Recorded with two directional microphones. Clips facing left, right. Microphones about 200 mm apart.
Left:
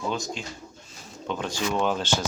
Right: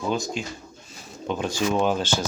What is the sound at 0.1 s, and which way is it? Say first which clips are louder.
Speech: right 4 dB; 10° right (ahead or behind).